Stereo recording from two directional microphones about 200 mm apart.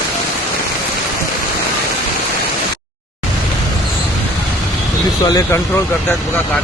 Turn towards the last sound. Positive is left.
turn(degrees=15)  # may be behind; listen again after turning